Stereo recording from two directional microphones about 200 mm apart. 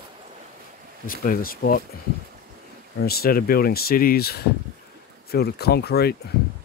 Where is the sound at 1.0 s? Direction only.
45° left (ahead or behind).